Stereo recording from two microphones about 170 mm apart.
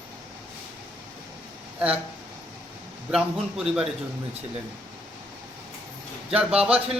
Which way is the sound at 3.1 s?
5° right (ahead or behind).